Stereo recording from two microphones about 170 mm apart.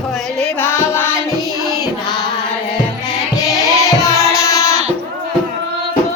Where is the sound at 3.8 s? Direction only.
20° left (ahead or behind).